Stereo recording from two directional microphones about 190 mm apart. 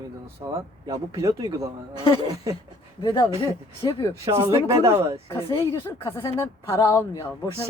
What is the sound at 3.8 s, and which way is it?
Speech, 20° left (ahead or behind).